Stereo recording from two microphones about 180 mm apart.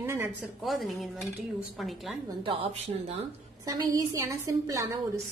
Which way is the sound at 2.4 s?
35° right (ahead or behind).